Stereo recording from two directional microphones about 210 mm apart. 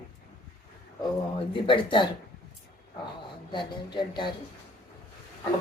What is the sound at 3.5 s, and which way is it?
Speech, 20° left (ahead or behind).